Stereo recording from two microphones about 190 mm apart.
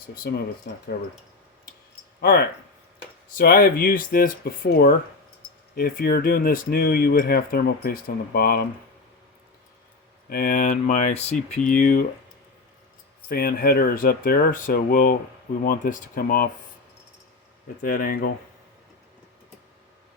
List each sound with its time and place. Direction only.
0.1 s speech: 55° left (ahead or behind)
2.2 s speech: 55° left (ahead or behind)
10.2 s speech: 50° left (ahead or behind)
13.2 s speech: 50° left (ahead or behind)
17.8 s speech: 50° left (ahead or behind)